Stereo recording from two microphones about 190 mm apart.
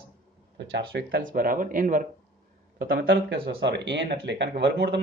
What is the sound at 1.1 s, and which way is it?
Speech, 50° right (ahead or behind).